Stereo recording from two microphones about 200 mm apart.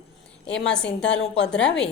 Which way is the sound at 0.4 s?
5° left (ahead or behind).